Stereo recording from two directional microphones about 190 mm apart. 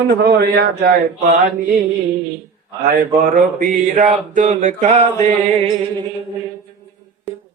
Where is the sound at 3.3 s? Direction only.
45° right (ahead or behind).